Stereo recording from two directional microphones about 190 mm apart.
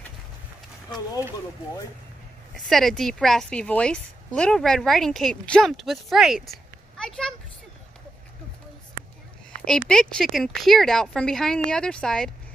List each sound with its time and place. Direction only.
0.8 s speech: 20° left (ahead or behind)
2.5 s a child's voice: centre (ahead or behind)
9.7 s speech: 5° left (ahead or behind)